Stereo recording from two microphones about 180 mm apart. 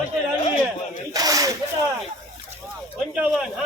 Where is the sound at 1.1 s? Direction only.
20° right (ahead or behind).